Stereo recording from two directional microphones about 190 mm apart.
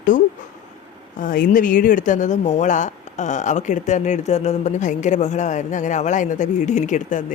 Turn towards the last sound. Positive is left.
turn(degrees=40)  # may be behind; listen again after turning